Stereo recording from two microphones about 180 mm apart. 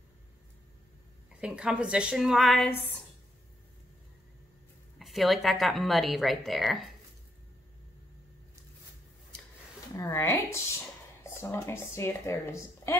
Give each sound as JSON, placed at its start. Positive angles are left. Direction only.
{"t": 1.4, "sound": "a woman's voice", "side_deg": -5}
{"t": 4.9, "sound": "a woman's voice", "side_deg": 0}
{"t": 9.9, "sound": "a woman's voice", "side_deg": 15}